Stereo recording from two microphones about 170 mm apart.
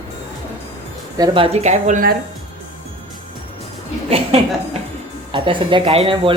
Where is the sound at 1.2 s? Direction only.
35° right (ahead or behind); by 2.1 s 50° right (ahead or behind).